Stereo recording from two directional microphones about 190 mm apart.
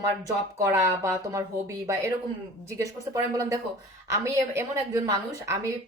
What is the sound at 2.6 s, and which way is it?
A woman's voice, 15° right (ahead or behind).